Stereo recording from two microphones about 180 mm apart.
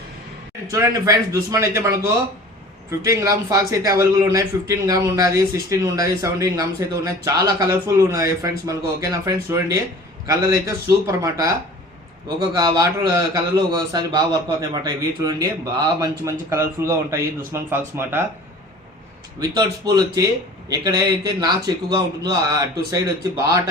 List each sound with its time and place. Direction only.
0.7 s a man's voice: 15° right (ahead or behind)
3.0 s a man's voice: 15° right (ahead or behind)
19.8 s a man's voice: 20° right (ahead or behind)